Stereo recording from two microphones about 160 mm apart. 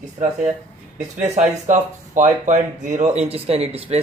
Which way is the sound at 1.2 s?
50° right (ahead or behind).